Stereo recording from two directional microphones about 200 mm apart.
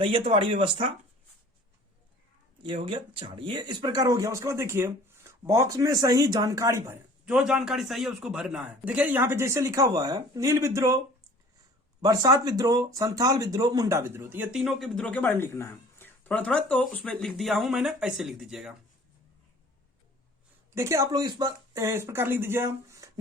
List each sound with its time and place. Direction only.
0.0 s speech: 30° right (ahead or behind)
2.8 s a man's voice: 25° right (ahead or behind)
7.3 s a man's voice: 5° right (ahead or behind)
12.0 s speech: 20° right (ahead or behind); by 18.7 s centre (ahead or behind)
20.7 s a man's voice: 15° right (ahead or behind)